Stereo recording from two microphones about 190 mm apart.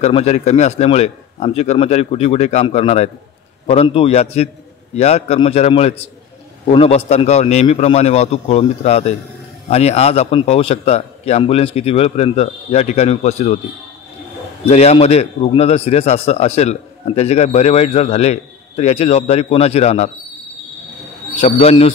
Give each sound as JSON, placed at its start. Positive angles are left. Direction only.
{"t": 0.0, "sound": "a man's voice", "side_deg": 35}
{"t": 14.7, "sound": "a man's voice", "side_deg": 35}
{"t": 21.4, "sound": "a man's voice", "side_deg": 35}